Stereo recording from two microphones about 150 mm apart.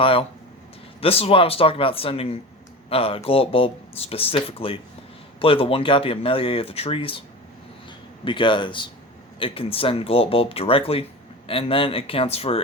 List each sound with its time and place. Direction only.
0.0 s a man's voice: 40° left (ahead or behind)